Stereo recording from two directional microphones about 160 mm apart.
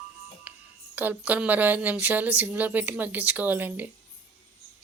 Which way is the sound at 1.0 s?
10° right (ahead or behind).